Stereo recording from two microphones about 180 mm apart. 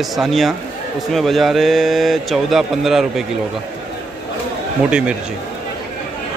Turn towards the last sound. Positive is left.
turn(degrees=-5)  # may be behind; listen again after turning